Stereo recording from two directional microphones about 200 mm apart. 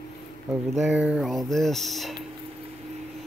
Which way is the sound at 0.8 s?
5° right (ahead or behind).